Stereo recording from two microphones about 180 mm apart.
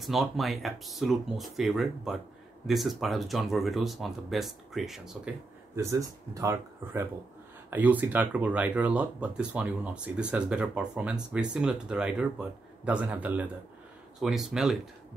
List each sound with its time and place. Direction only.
0.0 s speech: centre (ahead or behind)
5.8 s speech: 15° right (ahead or behind)